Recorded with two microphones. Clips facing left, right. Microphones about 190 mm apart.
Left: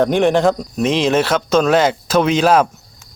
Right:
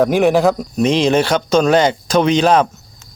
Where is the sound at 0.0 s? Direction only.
5° right (ahead or behind).